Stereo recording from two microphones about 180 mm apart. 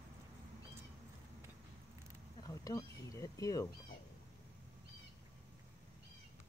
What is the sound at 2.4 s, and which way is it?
Speech, 20° left (ahead or behind).